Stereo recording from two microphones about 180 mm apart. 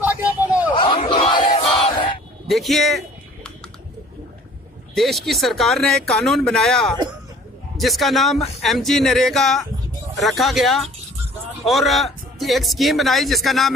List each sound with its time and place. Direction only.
0.0 s a sound: 10° right (ahead or behind)
0.7 s battle cry: 30° left (ahead or behind)
2.4 s music: centre (ahead or behind)
4.9 s speech: centre (ahead or behind)